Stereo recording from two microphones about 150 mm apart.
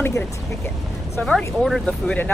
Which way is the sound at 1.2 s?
5° left (ahead or behind).